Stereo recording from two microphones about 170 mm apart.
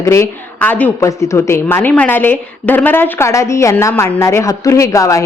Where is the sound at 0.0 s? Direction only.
15° left (ahead or behind).